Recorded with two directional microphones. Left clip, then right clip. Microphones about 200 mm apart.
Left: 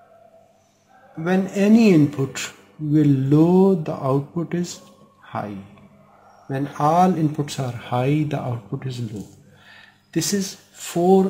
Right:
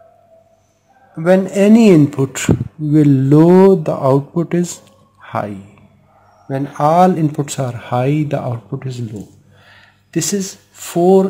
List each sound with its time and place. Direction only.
1.2 s speech: 40° right (ahead or behind)
3.8 s speech: 40° right (ahead or behind)
4.1 s speech: 30° right (ahead or behind)
4.6 s a sound: 40° right (ahead or behind)
6.5 s speech: 30° right (ahead or behind)
9.7 s a sound: 30° right (ahead or behind)